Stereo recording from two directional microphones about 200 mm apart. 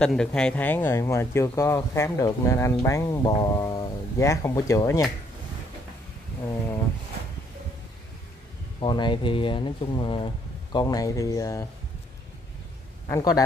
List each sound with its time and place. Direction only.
0.0 s speech: 5° left (ahead or behind)
8.7 s speech: 25° left (ahead or behind)
13.1 s speech: 20° left (ahead or behind)